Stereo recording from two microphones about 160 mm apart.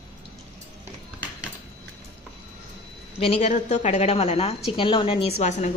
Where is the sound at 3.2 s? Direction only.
40° left (ahead or behind).